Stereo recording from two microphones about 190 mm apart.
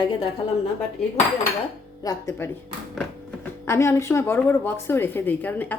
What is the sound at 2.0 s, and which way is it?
Speech, 15° left (ahead or behind).